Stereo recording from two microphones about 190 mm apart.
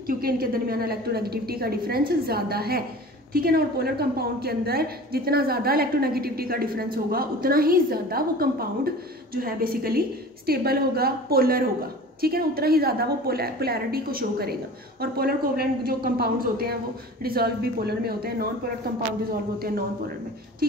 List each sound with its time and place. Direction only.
0.0 s a woman's voice: 50° right (ahead or behind)